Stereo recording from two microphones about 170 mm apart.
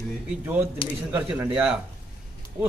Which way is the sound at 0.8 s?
30° left (ahead or behind).